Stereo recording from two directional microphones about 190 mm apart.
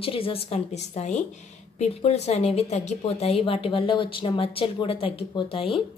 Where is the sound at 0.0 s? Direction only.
30° left (ahead or behind).